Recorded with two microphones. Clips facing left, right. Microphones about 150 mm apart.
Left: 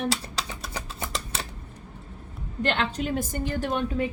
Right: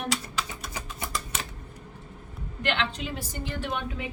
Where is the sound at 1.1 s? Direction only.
30° left (ahead or behind).